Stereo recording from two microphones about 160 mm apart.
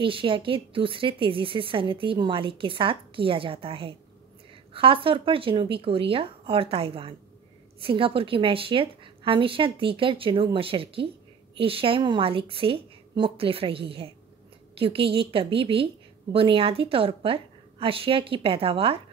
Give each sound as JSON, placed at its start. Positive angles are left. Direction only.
{"t": 0.0, "sound": "a woman's voice", "side_deg": -35}